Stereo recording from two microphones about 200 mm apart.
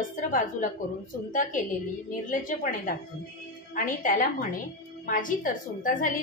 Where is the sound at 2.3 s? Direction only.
40° left (ahead or behind).